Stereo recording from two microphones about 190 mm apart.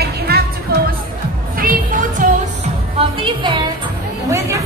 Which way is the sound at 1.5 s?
45° right (ahead or behind).